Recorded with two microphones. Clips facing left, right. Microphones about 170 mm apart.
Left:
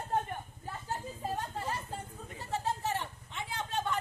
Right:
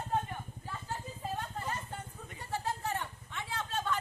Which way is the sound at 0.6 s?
40° left (ahead or behind).